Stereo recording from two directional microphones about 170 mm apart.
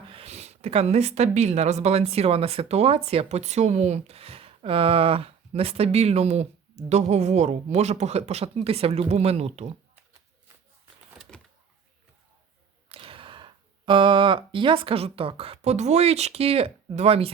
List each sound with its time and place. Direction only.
0.1 s speech: 35° right (ahead or behind)
11.3 s a sound: 5° left (ahead or behind)
12.9 s speech: 30° right (ahead or behind)